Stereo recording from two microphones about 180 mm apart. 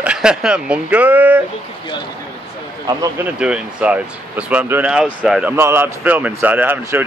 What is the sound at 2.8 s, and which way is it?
Speech, 10° right (ahead or behind).